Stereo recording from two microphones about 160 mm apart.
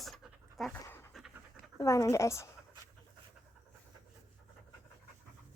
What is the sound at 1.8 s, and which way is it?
Speech, 20° left (ahead or behind).